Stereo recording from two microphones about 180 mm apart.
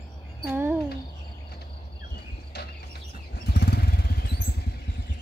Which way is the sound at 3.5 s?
65° left (ahead or behind).